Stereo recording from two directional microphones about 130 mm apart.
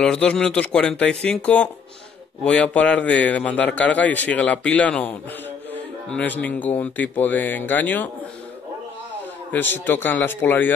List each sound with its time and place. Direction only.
0.0 s a man's voice: 10° left (ahead or behind)
9.5 s a man's voice: 15° left (ahead or behind)